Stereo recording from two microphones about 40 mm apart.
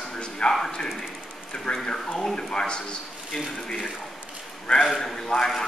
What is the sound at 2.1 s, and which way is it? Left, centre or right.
Speech, centre.